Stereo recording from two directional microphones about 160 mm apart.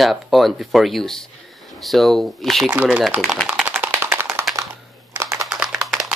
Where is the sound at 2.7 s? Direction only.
5° right (ahead or behind).